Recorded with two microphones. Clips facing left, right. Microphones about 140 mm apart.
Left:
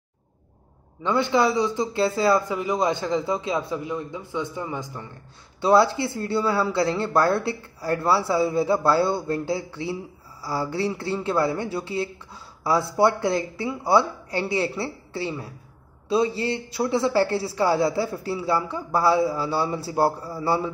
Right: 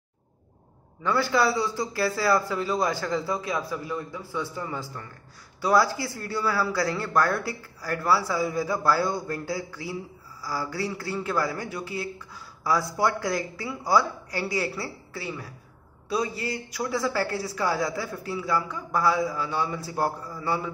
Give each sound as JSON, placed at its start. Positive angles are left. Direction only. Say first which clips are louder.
{"t": 1.0, "sound": "a man's voice", "louder": "left 3 dB", "side_deg": 20}